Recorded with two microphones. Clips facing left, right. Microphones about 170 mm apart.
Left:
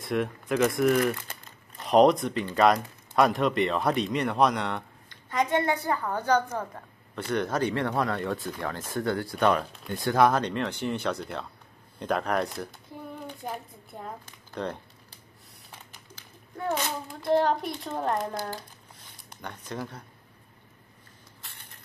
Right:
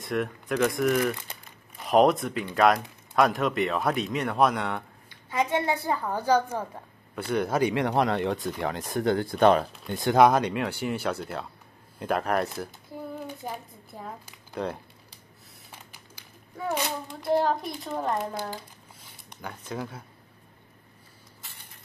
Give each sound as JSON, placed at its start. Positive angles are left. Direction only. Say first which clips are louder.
{"t": 0.0, "sound": "a woman's voice", "louder": "left 1 dB", "side_deg": 0}
{"t": 10.0, "sound": "a woman's voice", "louder": "right 3 dB", "side_deg": -20}
{"t": 15.9, "sound": "a child's voice", "louder": "left 1 dB", "side_deg": -5}
{"t": 19.7, "sound": "speech", "louder": "right 1 dB", "side_deg": -5}